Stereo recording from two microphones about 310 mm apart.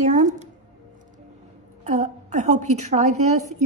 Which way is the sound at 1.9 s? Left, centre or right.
Right.